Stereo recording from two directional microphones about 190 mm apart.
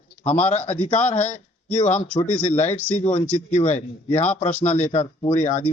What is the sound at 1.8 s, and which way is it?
Speech, 10° left (ahead or behind).